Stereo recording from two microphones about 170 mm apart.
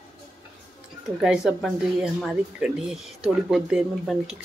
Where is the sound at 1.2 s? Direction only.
5° right (ahead or behind).